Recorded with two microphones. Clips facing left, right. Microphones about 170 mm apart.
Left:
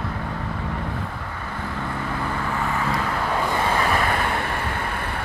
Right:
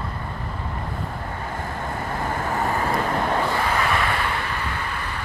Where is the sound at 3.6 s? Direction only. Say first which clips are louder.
Left 1 dB; 30° left (ahead or behind); by 5.1 s 50° left (ahead or behind).